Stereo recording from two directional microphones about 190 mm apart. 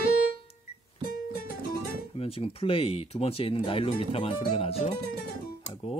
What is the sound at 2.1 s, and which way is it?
Speech, 30° left (ahead or behind).